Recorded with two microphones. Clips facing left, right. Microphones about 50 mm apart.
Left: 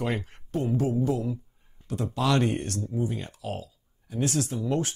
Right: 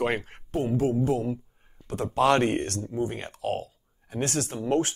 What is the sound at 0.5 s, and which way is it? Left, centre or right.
Speech, right.